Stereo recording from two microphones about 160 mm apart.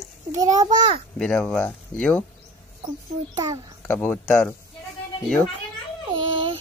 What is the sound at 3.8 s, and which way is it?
Speech, 10° left (ahead or behind).